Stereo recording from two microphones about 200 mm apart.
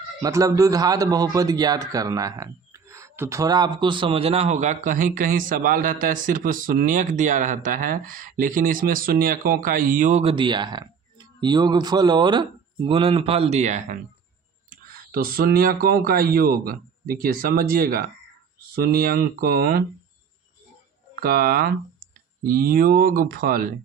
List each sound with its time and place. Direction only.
0.2 s speech: 15° right (ahead or behind); by 19.8 s 50° right (ahead or behind)
21.2 s speech: 45° right (ahead or behind)